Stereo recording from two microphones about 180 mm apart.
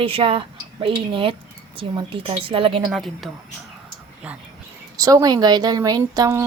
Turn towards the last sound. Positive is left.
turn(degrees=-15)  # may be behind; listen again after turning